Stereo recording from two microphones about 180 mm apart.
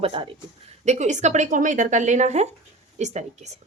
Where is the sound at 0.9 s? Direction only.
40° right (ahead or behind).